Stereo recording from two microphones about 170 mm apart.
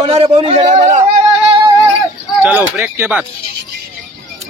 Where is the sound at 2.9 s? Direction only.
15° right (ahead or behind).